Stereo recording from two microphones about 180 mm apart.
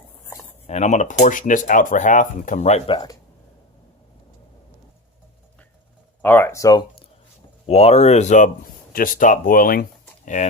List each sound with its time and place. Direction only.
0.7 s speech: 40° left (ahead or behind); by 3.2 s 25° left (ahead or behind)
6.2 s speech: 10° left (ahead or behind)
7.7 s speech: 35° left (ahead or behind)
8.9 s speech: 50° left (ahead or behind)